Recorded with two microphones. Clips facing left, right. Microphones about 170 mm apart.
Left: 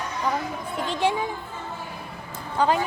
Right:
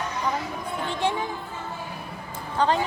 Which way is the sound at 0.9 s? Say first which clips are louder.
Left 3 dB; 15° left (ahead or behind).